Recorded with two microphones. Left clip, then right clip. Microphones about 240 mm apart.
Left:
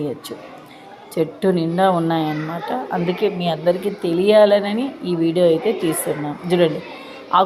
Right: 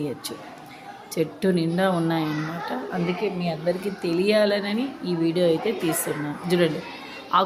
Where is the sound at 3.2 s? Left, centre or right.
Left.